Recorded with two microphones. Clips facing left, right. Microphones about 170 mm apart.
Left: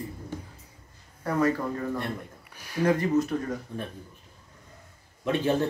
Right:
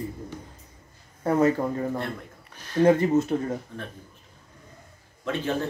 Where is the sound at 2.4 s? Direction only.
10° left (ahead or behind).